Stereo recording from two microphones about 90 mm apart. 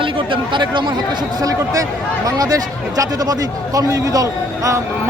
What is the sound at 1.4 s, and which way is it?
A man's voice, 40° right (ahead or behind).